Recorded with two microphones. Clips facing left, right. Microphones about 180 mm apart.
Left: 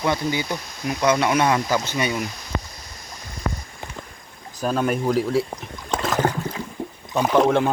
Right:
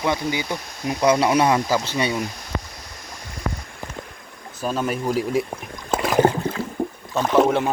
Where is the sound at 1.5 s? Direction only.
5° right (ahead or behind).